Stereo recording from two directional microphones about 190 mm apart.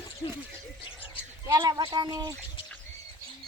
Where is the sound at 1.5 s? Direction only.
20° right (ahead or behind).